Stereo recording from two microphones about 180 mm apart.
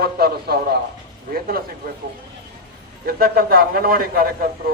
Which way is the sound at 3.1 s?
55° right (ahead or behind).